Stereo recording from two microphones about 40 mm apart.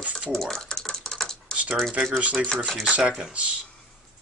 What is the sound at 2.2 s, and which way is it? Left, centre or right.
Speech, right.